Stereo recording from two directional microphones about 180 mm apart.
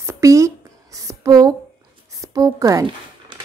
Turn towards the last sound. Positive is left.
turn(degrees=-20)  # may be behind; listen again after turning